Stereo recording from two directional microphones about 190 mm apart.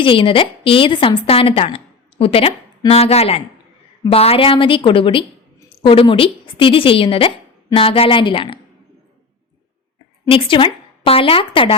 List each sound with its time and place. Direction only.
0.0 s a woman's voice: 25° left (ahead or behind)
10.2 s a woman's voice: 30° left (ahead or behind)